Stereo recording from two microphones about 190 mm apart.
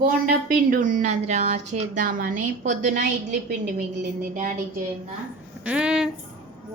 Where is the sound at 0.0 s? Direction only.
45° right (ahead or behind).